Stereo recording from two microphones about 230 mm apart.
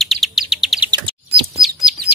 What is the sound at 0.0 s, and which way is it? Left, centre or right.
Chirp, centre.